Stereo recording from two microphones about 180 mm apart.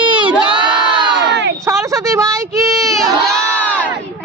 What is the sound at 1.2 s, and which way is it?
Crowd, 75° right (ahead or behind).